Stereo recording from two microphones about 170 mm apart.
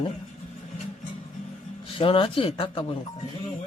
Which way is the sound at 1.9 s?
30° left (ahead or behind).